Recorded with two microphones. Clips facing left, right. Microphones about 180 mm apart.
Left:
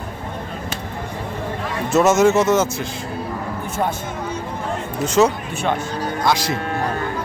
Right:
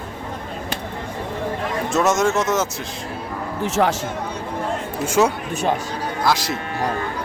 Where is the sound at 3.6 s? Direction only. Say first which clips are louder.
Right 5 dB; 80° right.